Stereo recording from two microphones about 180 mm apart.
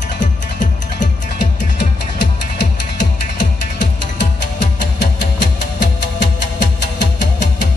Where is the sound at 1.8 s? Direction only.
75° left (ahead or behind).